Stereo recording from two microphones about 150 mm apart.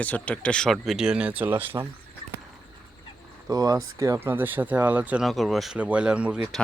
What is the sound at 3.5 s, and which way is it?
Speech, 25° right (ahead or behind).